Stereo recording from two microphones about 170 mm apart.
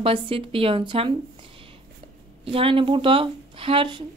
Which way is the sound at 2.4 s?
35° right (ahead or behind).